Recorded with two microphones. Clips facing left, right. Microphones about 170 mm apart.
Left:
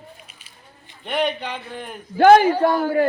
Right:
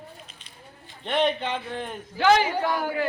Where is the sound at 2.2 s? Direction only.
55° left (ahead or behind).